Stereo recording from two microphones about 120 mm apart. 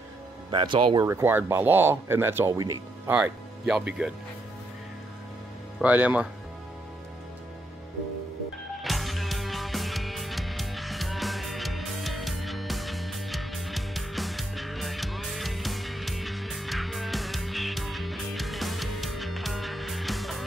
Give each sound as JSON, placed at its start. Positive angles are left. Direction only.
{"t": 0.5, "sound": "speech", "side_deg": -45}
{"t": 1.0, "sound": "speech", "side_deg": -20}
{"t": 3.1, "sound": "speech", "side_deg": -5}
{"t": 5.8, "sound": "speech", "side_deg": -10}
{"t": 8.7, "sound": "music", "side_deg": 0}